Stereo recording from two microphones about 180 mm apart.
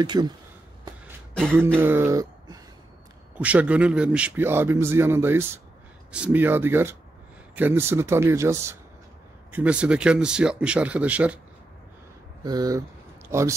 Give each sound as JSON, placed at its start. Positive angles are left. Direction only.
{"t": 0.0, "sound": "speech", "side_deg": -25}
{"t": 1.8, "sound": "speech", "side_deg": -10}
{"t": 3.3, "sound": "a man's voice", "side_deg": -10}
{"t": 12.4, "sound": "a man's voice", "side_deg": -20}